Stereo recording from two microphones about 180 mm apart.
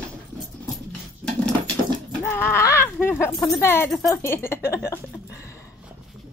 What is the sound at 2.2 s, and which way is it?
A woman's voice, 10° left (ahead or behind).